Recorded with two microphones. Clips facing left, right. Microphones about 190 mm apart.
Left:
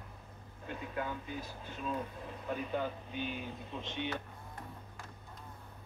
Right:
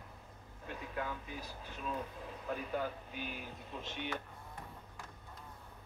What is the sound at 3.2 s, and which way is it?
Speech, 25° left (ahead or behind).